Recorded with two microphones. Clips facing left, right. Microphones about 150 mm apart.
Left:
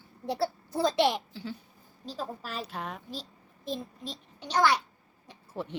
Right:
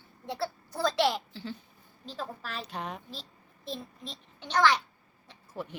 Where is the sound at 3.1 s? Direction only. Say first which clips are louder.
Left 5 dB; 40° left (ahead or behind).